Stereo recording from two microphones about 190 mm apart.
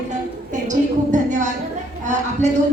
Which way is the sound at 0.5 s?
40° right (ahead or behind).